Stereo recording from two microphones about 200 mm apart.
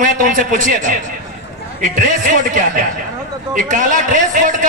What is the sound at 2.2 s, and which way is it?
A man's voice, 40° right (ahead or behind).